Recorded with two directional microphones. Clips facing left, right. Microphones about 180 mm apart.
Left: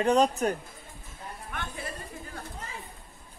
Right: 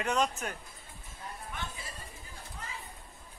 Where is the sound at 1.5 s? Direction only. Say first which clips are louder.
Left 8 dB; 60° left (ahead or behind).